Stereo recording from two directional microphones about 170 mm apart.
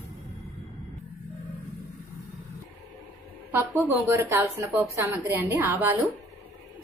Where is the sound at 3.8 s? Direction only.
10° right (ahead or behind).